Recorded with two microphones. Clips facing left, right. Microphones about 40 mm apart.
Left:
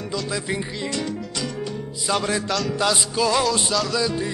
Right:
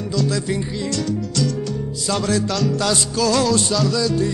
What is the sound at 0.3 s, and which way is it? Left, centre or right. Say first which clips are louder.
Music: right 4 dB; centre.